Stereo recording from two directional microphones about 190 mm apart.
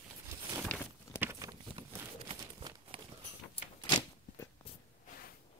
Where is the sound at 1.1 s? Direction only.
15° right (ahead or behind).